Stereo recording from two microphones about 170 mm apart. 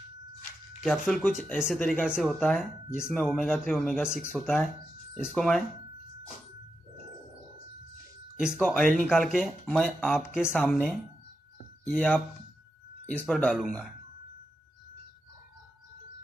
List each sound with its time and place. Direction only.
0.8 s speech: 5° left (ahead or behind)
8.4 s speech: 5° right (ahead or behind)
10.5 s speech: 10° left (ahead or behind)